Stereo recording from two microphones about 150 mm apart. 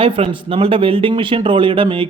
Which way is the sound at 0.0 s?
40° right (ahead or behind).